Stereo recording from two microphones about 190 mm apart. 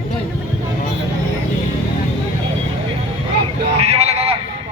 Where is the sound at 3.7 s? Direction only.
35° right (ahead or behind).